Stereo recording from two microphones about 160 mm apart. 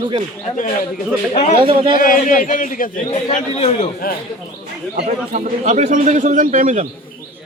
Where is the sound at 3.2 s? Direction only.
45° left (ahead or behind).